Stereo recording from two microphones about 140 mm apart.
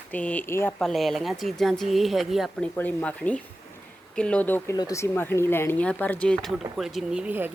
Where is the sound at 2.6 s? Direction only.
10° left (ahead or behind).